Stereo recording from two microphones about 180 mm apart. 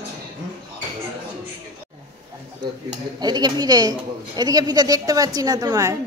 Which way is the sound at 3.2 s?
25° right (ahead or behind).